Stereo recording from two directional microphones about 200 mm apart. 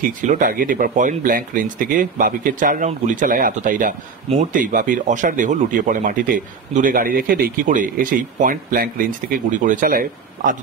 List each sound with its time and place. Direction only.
0.0 s speech: 40° right (ahead or behind)